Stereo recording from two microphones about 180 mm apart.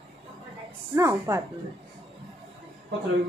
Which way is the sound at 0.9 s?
15° right (ahead or behind).